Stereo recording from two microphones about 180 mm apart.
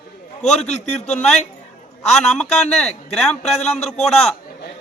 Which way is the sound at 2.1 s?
5° left (ahead or behind).